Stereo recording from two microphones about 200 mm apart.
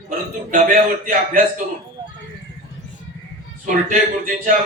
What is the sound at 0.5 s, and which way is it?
Speech, 40° right (ahead or behind).